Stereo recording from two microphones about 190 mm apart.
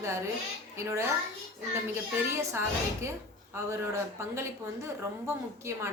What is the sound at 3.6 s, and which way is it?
A woman's voice, 15° right (ahead or behind).